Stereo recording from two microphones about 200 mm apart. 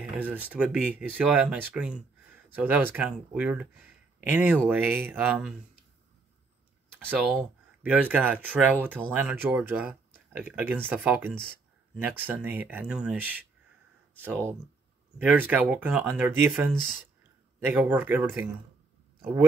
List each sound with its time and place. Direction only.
0.2 s speech: 10° right (ahead or behind)
7.1 s speech: 10° right (ahead or behind)